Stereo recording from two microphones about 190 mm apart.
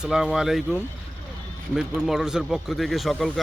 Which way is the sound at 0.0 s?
Centre (ahead or behind).